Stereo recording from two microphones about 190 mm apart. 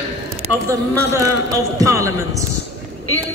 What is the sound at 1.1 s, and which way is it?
Speech, 15° right (ahead or behind).